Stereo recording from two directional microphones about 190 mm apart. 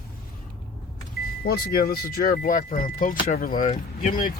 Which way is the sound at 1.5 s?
55° left (ahead or behind).